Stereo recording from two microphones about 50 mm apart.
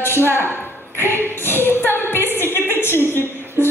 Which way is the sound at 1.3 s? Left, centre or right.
Left.